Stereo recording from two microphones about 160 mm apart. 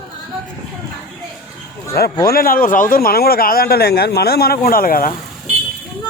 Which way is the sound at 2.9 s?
70° left (ahead or behind).